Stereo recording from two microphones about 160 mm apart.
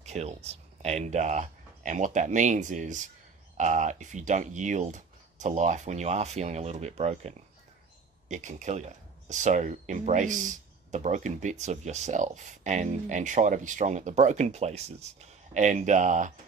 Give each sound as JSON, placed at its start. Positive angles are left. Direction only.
{"t": 0.0, "sound": "speech", "side_deg": -45}